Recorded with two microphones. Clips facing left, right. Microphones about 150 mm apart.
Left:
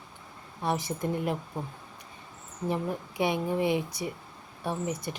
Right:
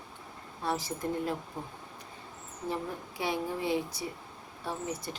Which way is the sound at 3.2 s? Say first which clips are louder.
Left 5 dB; 20° left (ahead or behind).